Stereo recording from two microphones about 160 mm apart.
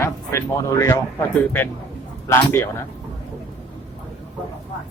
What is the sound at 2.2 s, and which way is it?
Speech, 15° left (ahead or behind).